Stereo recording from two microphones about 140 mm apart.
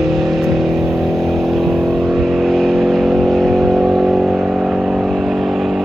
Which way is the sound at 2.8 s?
Centre (ahead or behind).